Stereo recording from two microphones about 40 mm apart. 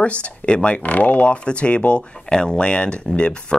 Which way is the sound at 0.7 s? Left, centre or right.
Left.